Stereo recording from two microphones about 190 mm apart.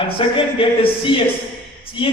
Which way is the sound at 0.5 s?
30° left (ahead or behind).